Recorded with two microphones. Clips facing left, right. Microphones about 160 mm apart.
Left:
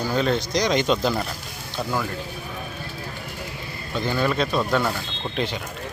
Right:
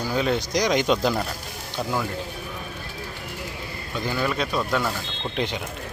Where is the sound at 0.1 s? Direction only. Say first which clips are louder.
Even; 10° right (ahead or behind).